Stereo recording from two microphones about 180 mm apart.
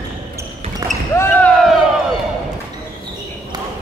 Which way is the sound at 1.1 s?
10° left (ahead or behind).